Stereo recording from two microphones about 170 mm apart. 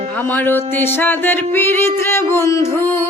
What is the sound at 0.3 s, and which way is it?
Music, 10° left (ahead or behind).